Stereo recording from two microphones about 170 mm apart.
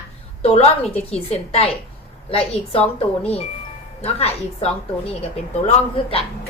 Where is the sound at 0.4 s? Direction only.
40° left (ahead or behind).